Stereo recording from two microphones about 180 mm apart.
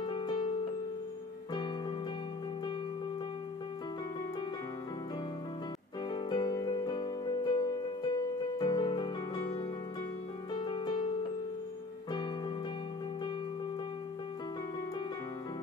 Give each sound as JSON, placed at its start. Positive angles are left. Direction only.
{"t": 0.0, "sound": "music", "side_deg": 25}
{"t": 6.0, "sound": "music", "side_deg": 25}
{"t": 10.5, "sound": "music", "side_deg": 25}